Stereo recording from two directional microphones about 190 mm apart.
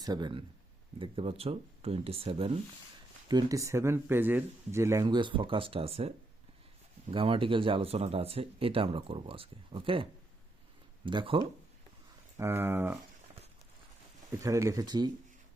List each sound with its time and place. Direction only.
0.0 s speech: 20° right (ahead or behind)
3.2 s speech: 20° right (ahead or behind)
12.4 s speech: 15° right (ahead or behind)
14.3 s speech: 15° right (ahead or behind)